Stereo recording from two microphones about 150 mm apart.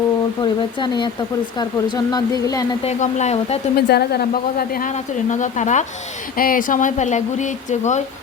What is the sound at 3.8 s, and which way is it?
Speech, 90° left.